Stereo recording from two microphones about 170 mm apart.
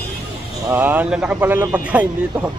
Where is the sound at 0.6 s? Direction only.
10° right (ahead or behind).